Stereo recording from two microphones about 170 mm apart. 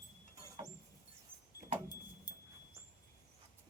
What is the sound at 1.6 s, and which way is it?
Vehicle, 55° left (ahead or behind).